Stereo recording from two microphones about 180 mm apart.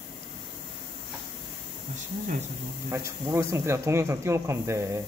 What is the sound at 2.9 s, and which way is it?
Speech, 15° right (ahead or behind).